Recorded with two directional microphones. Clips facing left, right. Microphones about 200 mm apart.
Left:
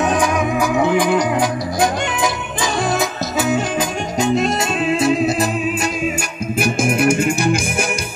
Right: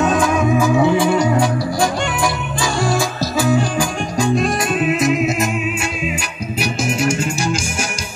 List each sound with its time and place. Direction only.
0.0 s music: 15° left (ahead or behind)
6.6 s music: 50° left (ahead or behind)